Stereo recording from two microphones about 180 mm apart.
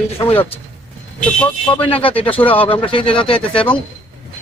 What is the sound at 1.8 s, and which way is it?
Speech, 30° left (ahead or behind).